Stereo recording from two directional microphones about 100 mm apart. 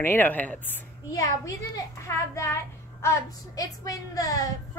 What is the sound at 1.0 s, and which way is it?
A woman's voice, 35° left (ahead or behind).